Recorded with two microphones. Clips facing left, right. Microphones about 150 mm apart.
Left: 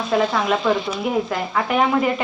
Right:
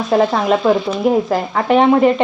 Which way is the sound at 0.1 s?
40° right (ahead or behind).